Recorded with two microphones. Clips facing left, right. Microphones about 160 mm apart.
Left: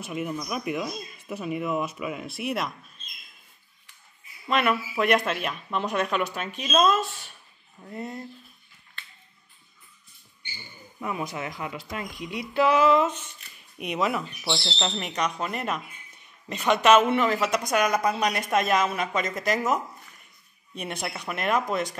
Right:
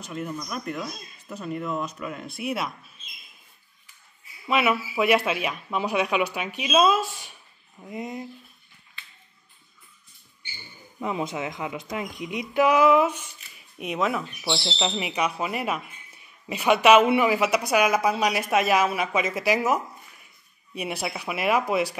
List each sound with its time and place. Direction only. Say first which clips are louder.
0.0 s speech: left 2 dB; 5° left (ahead or behind)
4.5 s a woman's voice: right 1 dB; 5° right (ahead or behind)
11.0 s a woman's voice: right 3 dB; 20° right (ahead or behind)
13.7 s a woman's voice: right 1 dB; centre (ahead or behind)